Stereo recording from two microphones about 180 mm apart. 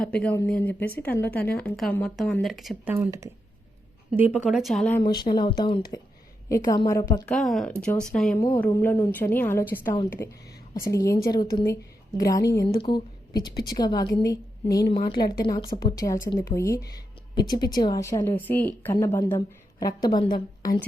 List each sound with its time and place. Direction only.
0.3 s a woman's voice: 10° left (ahead or behind)
2.9 s speech: 15° right (ahead or behind); by 4.9 s centre (ahead or behind)
5.0 s a woman's voice: 25° left (ahead or behind)
6.7 s a woman's voice: 15° left (ahead or behind)
7.3 s speech: centre (ahead or behind)
8.4 s a woman's voice: 15° left (ahead or behind)